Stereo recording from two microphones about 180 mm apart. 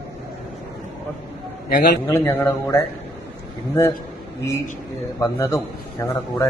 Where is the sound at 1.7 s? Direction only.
70° left (ahead or behind).